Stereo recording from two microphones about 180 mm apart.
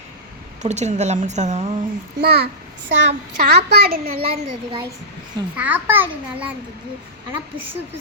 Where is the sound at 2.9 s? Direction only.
80° right; by 4.2 s 60° right (ahead or behind).